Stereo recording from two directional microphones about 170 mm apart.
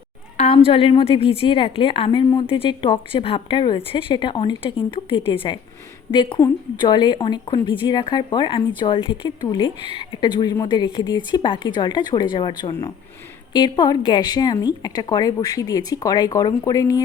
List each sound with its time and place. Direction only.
0.3 s a woman's voice: 40° left (ahead or behind); by 17.0 s 20° left (ahead or behind)